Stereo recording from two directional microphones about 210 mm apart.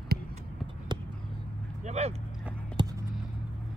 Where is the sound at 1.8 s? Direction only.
30° right (ahead or behind).